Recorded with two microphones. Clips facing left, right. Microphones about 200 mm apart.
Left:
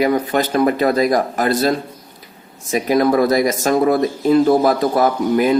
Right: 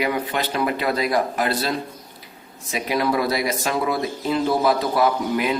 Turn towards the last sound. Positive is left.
turn(degrees=45)  # may be behind; listen again after turning